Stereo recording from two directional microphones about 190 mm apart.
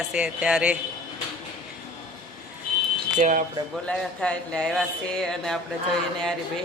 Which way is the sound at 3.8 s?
5° left (ahead or behind).